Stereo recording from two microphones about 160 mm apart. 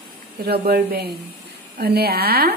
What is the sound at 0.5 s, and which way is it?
A woman's voice, 80° right.